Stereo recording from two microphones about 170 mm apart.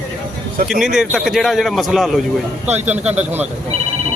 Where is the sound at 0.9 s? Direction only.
Centre (ahead or behind).